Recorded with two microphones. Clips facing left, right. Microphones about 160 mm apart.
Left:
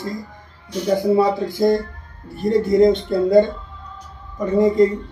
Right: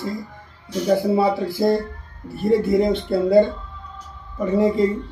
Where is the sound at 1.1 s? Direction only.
5° right (ahead or behind).